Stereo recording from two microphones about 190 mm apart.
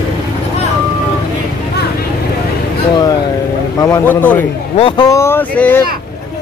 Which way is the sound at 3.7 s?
20° left (ahead or behind).